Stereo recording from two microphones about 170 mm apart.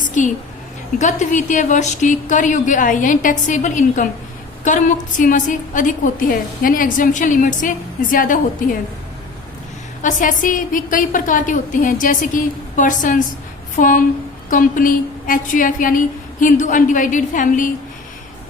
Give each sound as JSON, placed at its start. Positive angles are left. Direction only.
{"t": 0.0, "sound": "a sound", "side_deg": 50}
{"t": 0.9, "sound": "a woman's voice", "side_deg": 45}
{"t": 10.0, "sound": "a woman's voice", "side_deg": 50}